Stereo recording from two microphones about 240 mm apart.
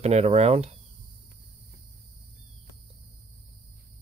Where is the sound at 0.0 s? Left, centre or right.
Right.